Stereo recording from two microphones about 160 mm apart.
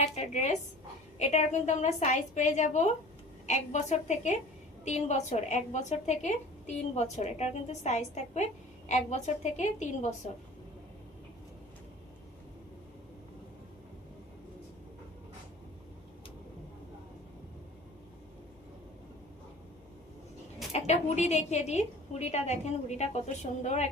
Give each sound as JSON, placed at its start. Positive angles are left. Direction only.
{"t": 0.0, "sound": "a woman's voice", "side_deg": 45}
{"t": 20.7, "sound": "a woman's voice", "side_deg": 45}